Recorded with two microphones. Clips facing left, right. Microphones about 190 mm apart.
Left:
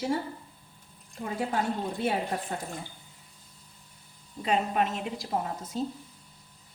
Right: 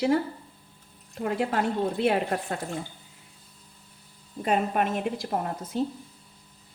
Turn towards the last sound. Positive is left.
turn(degrees=-60)  # may be behind; listen again after turning